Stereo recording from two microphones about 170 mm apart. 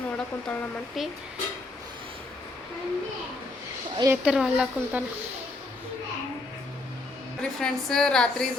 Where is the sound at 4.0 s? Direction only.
15° right (ahead or behind).